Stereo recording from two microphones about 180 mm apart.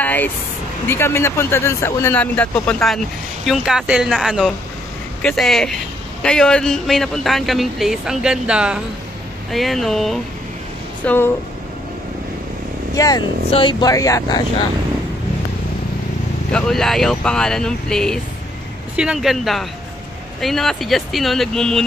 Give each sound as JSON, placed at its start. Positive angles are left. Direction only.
{"t": 0.0, "sound": "vehicle", "side_deg": 10}
{"t": 0.8, "sound": "speech", "side_deg": 15}
{"t": 11.1, "sound": "speech", "side_deg": 10}
{"t": 12.9, "sound": "speech", "side_deg": 20}
{"t": 16.5, "sound": "speech", "side_deg": 0}